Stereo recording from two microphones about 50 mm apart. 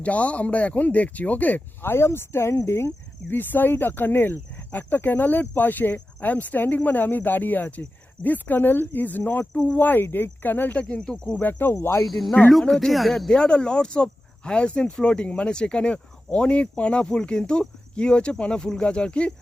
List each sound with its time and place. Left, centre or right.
0.0 s speech: left
1.8 s speech: left
3.3 s speech: left
10.8 s speech: left
11.3 s speech: left
11.7 s speech: left
12.0 s speech: centre
13.3 s speech: centre